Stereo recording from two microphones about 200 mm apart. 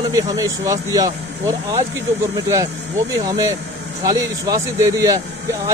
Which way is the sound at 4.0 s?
20° right (ahead or behind).